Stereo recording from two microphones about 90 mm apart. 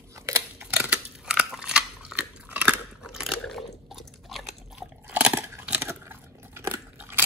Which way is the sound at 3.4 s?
5° left (ahead or behind).